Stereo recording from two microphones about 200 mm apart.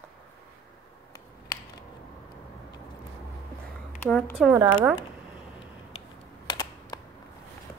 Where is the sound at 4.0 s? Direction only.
5° left (ahead or behind).